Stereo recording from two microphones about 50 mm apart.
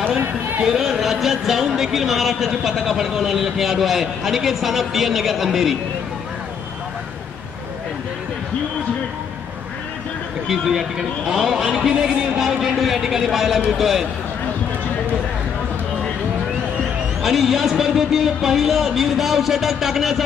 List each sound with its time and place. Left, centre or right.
0.7 s speech: centre
10.5 s a man's voice: centre
17.2 s speech: centre